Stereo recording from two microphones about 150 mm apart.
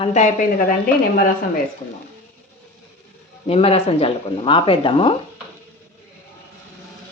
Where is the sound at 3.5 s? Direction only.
40° left (ahead or behind).